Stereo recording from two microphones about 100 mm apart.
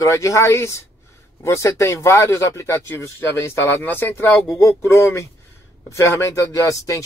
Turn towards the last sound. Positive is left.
turn(degrees=30)  # may be behind; listen again after turning